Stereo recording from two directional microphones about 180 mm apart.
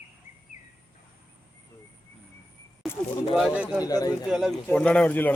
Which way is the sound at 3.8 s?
20° left (ahead or behind).